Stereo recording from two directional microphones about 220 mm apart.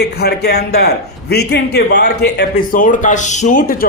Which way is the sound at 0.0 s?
45° left (ahead or behind).